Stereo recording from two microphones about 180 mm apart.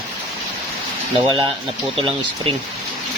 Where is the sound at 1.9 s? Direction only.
30° right (ahead or behind).